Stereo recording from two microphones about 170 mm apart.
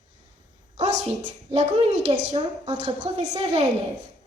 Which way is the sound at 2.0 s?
35° right (ahead or behind).